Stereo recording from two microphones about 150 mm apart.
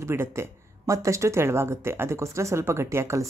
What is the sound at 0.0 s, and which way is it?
A woman's voice, 15° right (ahead or behind).